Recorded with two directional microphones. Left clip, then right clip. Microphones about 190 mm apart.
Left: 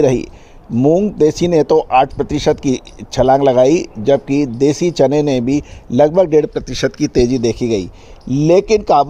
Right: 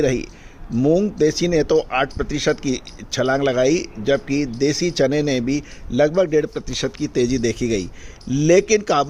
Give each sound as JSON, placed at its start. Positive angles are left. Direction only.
{"t": 0.0, "sound": "speech", "side_deg": 25}
{"t": 7.3, "sound": "speech", "side_deg": 10}